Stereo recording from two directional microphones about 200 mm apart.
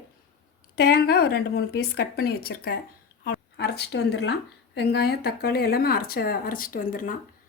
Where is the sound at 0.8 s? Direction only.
50° left (ahead or behind).